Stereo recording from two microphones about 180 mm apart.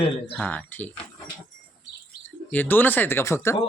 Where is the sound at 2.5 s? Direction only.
10° left (ahead or behind).